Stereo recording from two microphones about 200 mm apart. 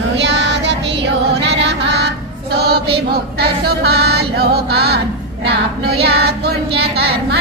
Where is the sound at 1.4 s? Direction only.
60° right (ahead or behind).